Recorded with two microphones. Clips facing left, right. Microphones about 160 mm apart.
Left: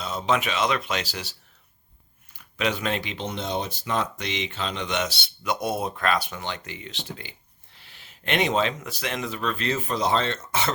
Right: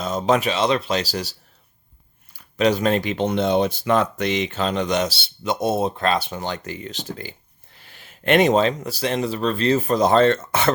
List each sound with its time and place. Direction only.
0.0 s speech: 45° right (ahead or behind)